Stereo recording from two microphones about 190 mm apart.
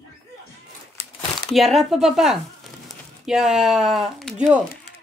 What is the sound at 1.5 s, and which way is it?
A woman's voice, centre (ahead or behind).